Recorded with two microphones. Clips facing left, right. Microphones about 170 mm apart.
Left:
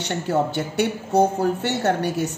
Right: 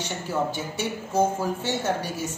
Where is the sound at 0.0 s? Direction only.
65° left (ahead or behind).